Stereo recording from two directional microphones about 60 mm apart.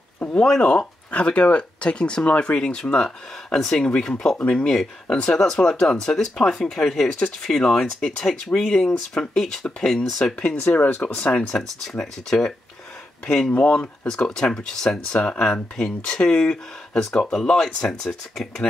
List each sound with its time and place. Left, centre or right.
0.4 s speech: centre
10.7 s speech: left
11.9 s speech: centre
13.5 s speech: left
13.7 s speech: centre